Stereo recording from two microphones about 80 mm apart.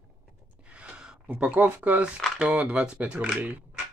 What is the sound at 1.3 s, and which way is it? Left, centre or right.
Speech, centre.